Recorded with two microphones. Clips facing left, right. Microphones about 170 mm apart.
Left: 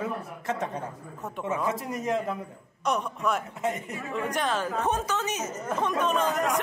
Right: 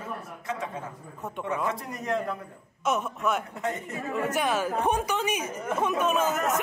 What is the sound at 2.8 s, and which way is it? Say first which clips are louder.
A man's voice: even; centre (ahead or behind).